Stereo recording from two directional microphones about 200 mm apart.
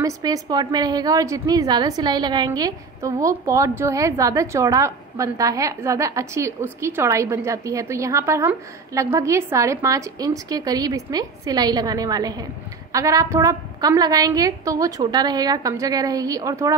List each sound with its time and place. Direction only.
0.0 s a woman's voice: 20° right (ahead or behind)